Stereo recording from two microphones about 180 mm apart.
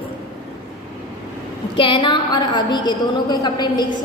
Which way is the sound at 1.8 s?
25° left (ahead or behind).